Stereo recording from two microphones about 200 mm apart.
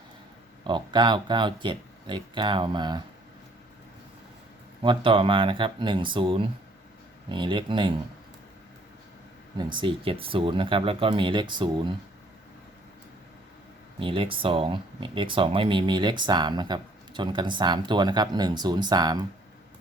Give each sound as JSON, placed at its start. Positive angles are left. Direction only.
{"t": 0.6, "sound": "speech", "side_deg": -25}
{"t": 4.8, "sound": "speech", "side_deg": -25}
{"t": 9.6, "sound": "speech", "side_deg": -25}
{"t": 14.0, "sound": "speech", "side_deg": -25}